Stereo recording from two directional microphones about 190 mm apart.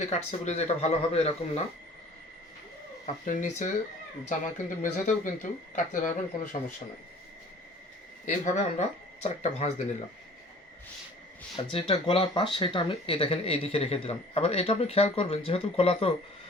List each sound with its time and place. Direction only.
0.0 s speech: 35° left (ahead or behind)
3.2 s speech: 40° left (ahead or behind)
8.5 s speech: 35° left (ahead or behind)
11.5 s speech: 30° left (ahead or behind)